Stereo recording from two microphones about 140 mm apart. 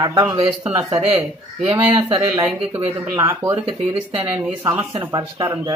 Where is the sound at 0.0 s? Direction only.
25° right (ahead or behind).